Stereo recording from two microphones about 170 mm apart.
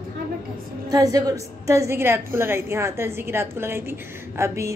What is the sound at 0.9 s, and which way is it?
A woman's voice, 20° right (ahead or behind).